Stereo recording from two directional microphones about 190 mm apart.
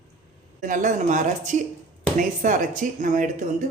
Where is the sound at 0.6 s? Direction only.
45° right (ahead or behind).